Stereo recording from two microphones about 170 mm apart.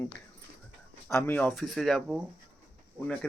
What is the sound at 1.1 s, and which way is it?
Speech, 15° left (ahead or behind).